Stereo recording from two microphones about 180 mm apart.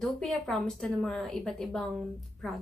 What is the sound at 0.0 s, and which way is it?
A woman's voice, centre (ahead or behind).